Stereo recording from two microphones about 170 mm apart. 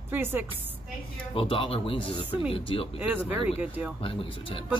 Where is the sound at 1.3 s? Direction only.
30° left (ahead or behind).